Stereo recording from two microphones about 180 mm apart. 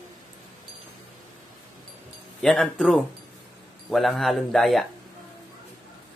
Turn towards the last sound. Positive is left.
turn(degrees=0)  # may be behind; listen again after turning